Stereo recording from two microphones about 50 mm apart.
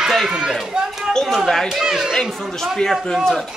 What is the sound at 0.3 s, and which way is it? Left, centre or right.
Speech, centre.